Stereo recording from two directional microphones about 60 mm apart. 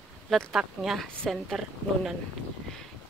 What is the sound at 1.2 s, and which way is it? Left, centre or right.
Speech, centre.